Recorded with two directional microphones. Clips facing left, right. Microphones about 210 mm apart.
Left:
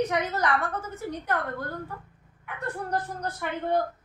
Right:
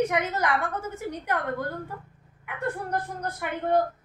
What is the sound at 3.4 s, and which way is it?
Speech, 15° right (ahead or behind).